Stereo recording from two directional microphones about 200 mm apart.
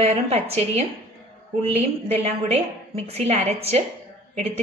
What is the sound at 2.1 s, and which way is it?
A woman's voice, 30° right (ahead or behind).